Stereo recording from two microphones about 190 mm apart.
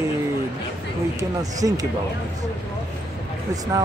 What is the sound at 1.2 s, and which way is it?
Speech, 20° right (ahead or behind).